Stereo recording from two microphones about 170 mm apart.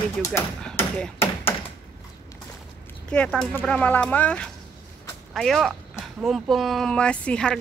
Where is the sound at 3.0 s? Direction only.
5° left (ahead or behind).